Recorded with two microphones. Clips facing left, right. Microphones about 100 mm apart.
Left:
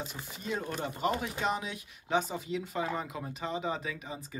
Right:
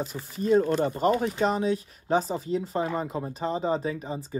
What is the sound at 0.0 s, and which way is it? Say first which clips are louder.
Speech: right 10 dB; 40° right (ahead or behind).